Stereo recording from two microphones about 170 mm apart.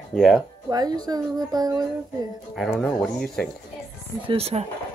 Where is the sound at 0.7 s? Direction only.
25° right (ahead or behind).